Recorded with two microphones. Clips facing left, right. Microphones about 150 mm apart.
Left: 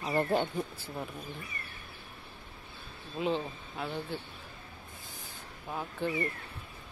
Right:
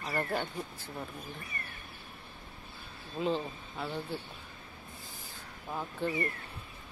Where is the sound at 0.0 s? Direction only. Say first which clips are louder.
Left 5 dB; 20° left (ahead or behind).